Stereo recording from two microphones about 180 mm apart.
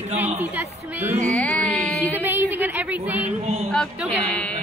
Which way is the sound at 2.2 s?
10° right (ahead or behind).